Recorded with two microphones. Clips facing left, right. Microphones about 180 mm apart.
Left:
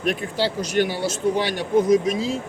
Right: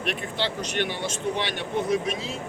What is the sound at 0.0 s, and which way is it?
Speech, 40° left (ahead or behind).